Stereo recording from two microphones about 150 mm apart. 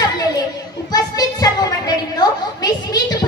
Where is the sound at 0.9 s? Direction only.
25° left (ahead or behind).